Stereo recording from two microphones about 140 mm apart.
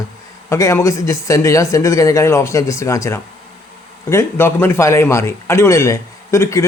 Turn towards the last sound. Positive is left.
turn(degrees=20)  # may be behind; listen again after turning